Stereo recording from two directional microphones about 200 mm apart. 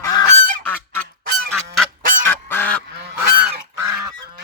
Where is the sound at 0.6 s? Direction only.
10° left (ahead or behind).